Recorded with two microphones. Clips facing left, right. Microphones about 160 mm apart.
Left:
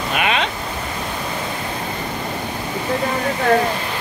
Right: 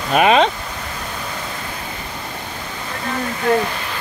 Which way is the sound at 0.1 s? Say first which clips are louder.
Right 8 dB; 40° right (ahead or behind).